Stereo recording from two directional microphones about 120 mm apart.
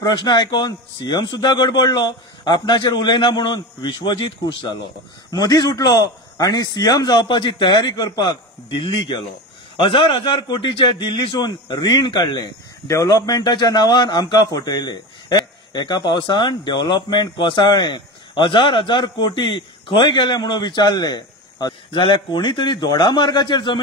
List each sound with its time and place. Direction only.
0.0 s a man's voice: 40° left (ahead or behind)